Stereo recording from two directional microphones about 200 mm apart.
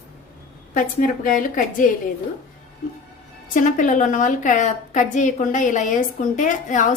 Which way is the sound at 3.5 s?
40° left (ahead or behind).